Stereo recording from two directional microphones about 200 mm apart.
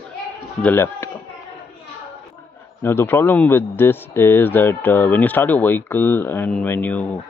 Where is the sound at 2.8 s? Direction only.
10° left (ahead or behind).